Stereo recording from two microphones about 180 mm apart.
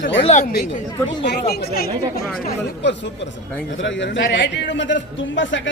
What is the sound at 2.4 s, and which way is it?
A man's voice, 75° left (ahead or behind).